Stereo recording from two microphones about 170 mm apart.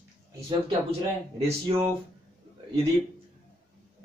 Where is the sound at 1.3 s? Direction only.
35° right (ahead or behind).